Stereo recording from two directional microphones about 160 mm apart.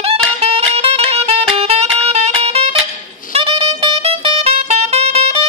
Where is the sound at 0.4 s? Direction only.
40° right (ahead or behind).